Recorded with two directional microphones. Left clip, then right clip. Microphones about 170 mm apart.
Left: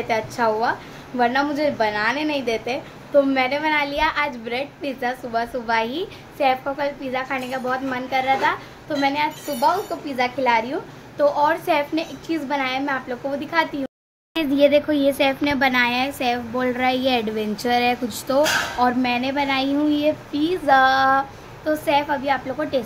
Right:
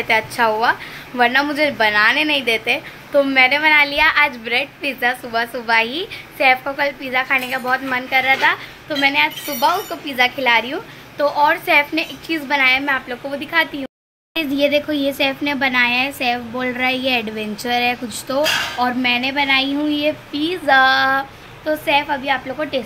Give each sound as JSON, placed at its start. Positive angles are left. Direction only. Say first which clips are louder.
{"t": 0.1, "sound": "a woman's voice", "louder": "right 5 dB", "side_deg": 5}
{"t": 18.8, "sound": "a woman's voice", "louder": "right 2 dB", "side_deg": 5}